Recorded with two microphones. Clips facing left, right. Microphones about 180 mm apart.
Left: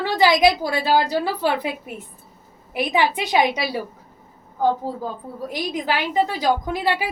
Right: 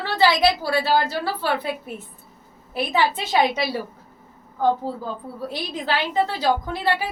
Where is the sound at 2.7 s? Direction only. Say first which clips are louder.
Left 1 dB; 15° left (ahead or behind).